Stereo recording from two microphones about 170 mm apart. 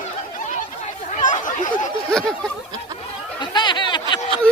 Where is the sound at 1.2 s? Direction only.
50° left (ahead or behind).